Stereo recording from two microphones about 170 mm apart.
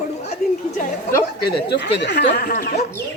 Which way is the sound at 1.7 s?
90° left.